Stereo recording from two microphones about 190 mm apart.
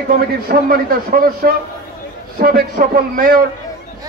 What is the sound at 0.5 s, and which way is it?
A man's voice, 50° right (ahead or behind).